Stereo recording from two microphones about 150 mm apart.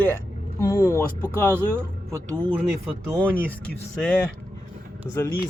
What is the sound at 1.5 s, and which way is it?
Speech, 15° right (ahead or behind).